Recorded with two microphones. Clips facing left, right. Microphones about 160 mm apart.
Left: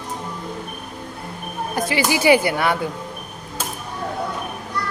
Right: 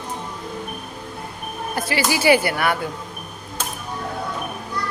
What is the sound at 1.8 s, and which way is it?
Speech, 20° left (ahead or behind).